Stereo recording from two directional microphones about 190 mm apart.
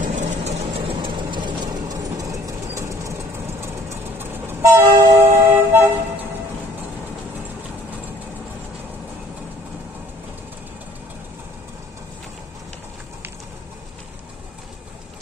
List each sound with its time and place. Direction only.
0.0 s vehicle: 40° right (ahead or behind); by 3.2 s 15° right (ahead or behind)
3.6 s train: 10° right (ahead or behind)